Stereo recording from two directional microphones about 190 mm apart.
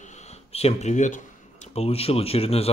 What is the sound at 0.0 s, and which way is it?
Speech, 35° left (ahead or behind).